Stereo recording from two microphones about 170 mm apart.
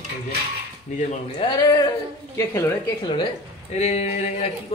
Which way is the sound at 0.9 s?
45° left (ahead or behind).